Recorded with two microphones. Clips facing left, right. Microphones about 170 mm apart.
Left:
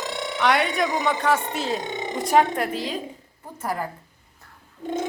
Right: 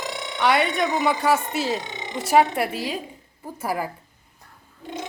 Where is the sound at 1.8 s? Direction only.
50° left (ahead or behind).